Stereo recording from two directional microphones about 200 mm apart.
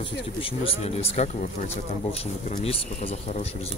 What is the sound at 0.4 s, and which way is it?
Speech, 30° left (ahead or behind).